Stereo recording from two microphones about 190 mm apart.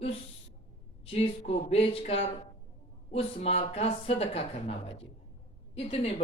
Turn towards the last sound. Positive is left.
turn(degrees=30)  # may be behind; listen again after turning